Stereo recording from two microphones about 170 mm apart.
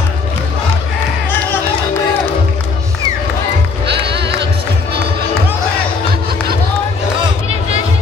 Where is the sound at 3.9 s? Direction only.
85° right.